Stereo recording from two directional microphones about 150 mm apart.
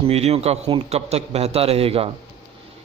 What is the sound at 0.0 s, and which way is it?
A man's voice, 45° right (ahead or behind).